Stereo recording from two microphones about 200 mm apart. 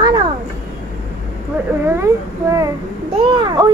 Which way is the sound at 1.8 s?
15° right (ahead or behind).